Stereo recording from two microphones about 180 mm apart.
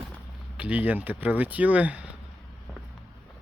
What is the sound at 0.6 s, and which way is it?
Speech, 10° right (ahead or behind).